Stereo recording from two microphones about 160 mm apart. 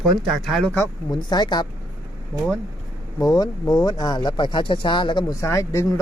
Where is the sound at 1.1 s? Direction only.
25° left (ahead or behind).